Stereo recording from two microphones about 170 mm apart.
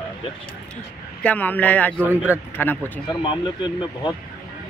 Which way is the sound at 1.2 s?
10° left (ahead or behind).